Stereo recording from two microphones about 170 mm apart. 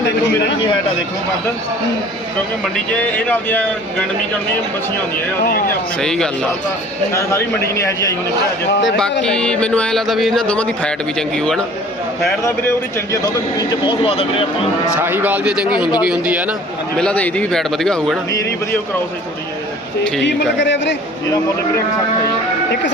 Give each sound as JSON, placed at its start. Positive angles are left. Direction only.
{"t": 3.2, "sound": "a man's voice", "side_deg": 10}
{"t": 5.6, "sound": "a man's voice", "side_deg": 5}
{"t": 7.1, "sound": "a man's voice", "side_deg": 15}
{"t": 8.8, "sound": "a man's voice", "side_deg": 5}
{"t": 12.4, "sound": "a man's voice", "side_deg": 15}
{"t": 15.0, "sound": "a man's voice", "side_deg": -10}
{"t": 17.0, "sound": "a man's voice", "side_deg": 10}
{"t": 20.2, "sound": "speech", "side_deg": 90}